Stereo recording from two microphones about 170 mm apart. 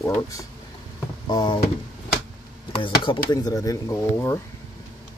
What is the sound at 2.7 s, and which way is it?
Speech, 30° left (ahead or behind).